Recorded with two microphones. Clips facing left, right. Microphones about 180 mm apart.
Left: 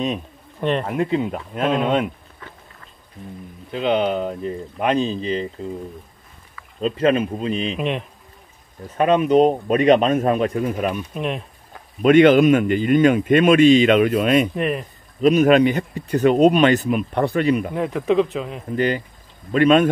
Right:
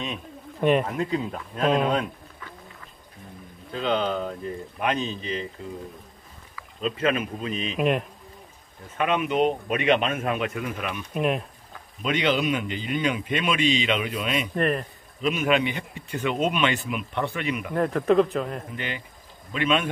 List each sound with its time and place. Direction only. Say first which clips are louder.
0.6 s speech: right 1 dB; 10° right (ahead or behind)
0.8 s speech: left 6 dB; 25° left (ahead or behind)
3.7 s speech: left 5 dB; 20° left (ahead or behind)
6.8 s speech: left 7 dB; 35° left (ahead or behind)
7.7 s speech: right 1 dB; 5° right (ahead or behind)
8.9 s speech: left 9 dB; 35° left (ahead or behind)
11.1 s speech: right 1 dB; 5° right (ahead or behind)
12.0 s speech: left 12 dB; 50° left (ahead or behind)
14.5 s speech: left 2 dB; 5° left (ahead or behind)
15.2 s speech: left 10 dB; 40° left (ahead or behind)
17.7 s speech: left 1 dB; 5° left (ahead or behind)
18.8 s speech: left 13 dB; 40° left (ahead or behind)